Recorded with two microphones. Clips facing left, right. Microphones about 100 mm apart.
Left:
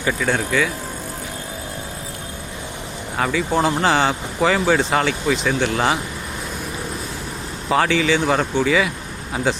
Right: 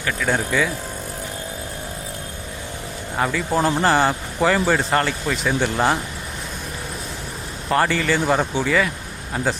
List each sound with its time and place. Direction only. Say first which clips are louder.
0.2 s speech: right 3 dB; 5° right (ahead or behind)
3.2 s speech: left 1 dB; centre (ahead or behind)
7.7 s speech: left 2 dB; centre (ahead or behind)